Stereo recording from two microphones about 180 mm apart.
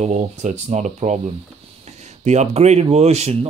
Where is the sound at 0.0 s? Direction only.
40° right (ahead or behind).